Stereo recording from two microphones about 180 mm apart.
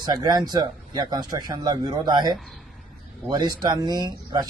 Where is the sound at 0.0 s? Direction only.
20° right (ahead or behind).